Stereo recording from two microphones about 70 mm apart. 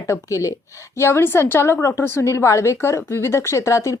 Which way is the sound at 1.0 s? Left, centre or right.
Left.